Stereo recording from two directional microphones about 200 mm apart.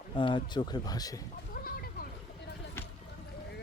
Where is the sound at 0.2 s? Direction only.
25° left (ahead or behind).